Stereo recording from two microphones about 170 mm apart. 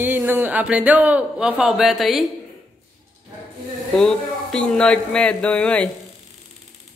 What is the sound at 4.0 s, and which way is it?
A man's voice, 5° left (ahead or behind).